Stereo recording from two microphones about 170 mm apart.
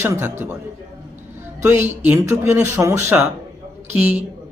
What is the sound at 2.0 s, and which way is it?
A man's voice, 15° right (ahead or behind).